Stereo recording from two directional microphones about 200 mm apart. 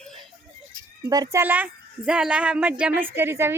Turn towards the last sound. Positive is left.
turn(degrees=-10)  # may be behind; listen again after turning